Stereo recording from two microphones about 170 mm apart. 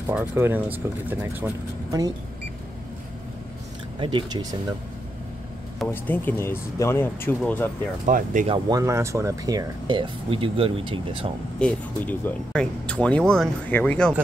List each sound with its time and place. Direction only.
0.0 s speech: 15° right (ahead or behind)
1.9 s speech: 20° right (ahead or behind)
4.0 s speech: 25° right (ahead or behind)
6.0 s speech: 15° left (ahead or behind)
8.0 s speech: 50° right (ahead or behind)
8.5 s speech: 25° right (ahead or behind)
11.6 s speech: 10° left (ahead or behind)